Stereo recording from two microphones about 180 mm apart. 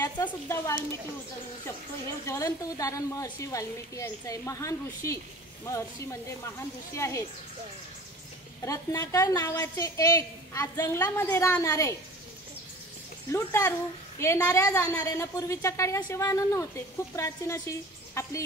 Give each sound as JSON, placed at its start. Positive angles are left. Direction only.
{"t": 0.0, "sound": "a woman's voice", "side_deg": 15}
{"t": 2.2, "sound": "a woman's voice", "side_deg": 15}
{"t": 8.6, "sound": "a woman's voice", "side_deg": 20}
{"t": 13.3, "sound": "a woman's voice", "side_deg": 15}